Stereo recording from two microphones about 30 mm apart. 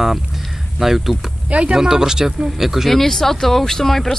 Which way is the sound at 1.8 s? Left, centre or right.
Centre.